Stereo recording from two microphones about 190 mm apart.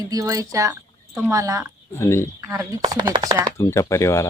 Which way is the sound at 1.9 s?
15° left (ahead or behind).